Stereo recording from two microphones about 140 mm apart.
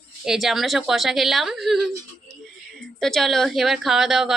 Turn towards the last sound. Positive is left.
turn(degrees=-5)  # may be behind; listen again after turning